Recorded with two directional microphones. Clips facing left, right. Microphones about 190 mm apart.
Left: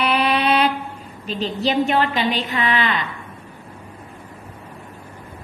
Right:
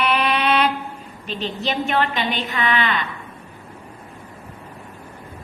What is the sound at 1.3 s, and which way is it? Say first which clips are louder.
A woman's voice: left 4 dB; 35° left (ahead or behind).